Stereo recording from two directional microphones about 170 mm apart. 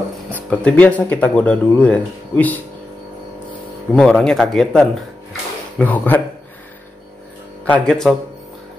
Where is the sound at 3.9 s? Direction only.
5° left (ahead or behind).